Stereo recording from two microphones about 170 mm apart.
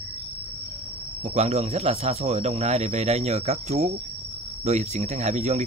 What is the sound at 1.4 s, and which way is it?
Speech, 40° right (ahead or behind).